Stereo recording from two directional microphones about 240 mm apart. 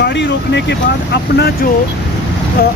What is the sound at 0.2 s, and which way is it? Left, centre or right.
Speech, left.